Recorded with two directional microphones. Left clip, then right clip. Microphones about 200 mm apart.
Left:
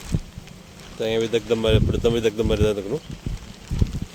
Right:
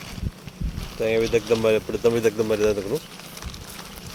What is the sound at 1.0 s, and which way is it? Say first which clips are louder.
Speech: right 1 dB; 15° left (ahead or behind).